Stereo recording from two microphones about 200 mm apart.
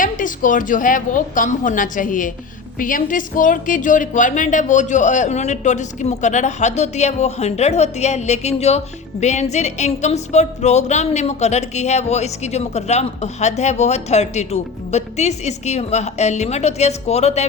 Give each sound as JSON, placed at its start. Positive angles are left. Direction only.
{"t": 0.0, "sound": "music", "side_deg": 40}